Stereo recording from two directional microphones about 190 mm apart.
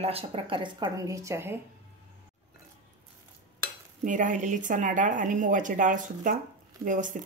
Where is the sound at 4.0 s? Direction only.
40° right (ahead or behind).